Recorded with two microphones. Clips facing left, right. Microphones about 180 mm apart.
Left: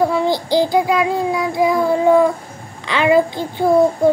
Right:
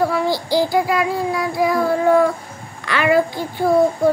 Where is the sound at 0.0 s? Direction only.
20° left (ahead or behind).